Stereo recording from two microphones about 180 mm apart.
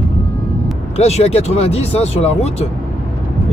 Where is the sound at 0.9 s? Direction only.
35° left (ahead or behind).